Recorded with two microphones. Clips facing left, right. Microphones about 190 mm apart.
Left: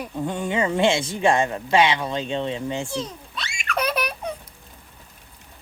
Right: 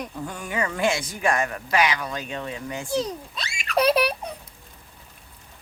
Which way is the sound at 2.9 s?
40° right (ahead or behind).